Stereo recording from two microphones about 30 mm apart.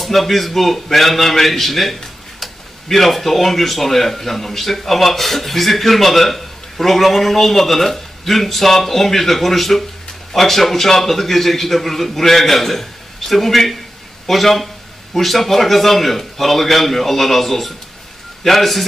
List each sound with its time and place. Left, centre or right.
0.0 s a man's voice: centre